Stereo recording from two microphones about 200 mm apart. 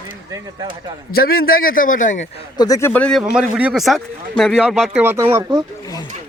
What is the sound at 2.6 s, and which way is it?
Speech, 15° left (ahead or behind).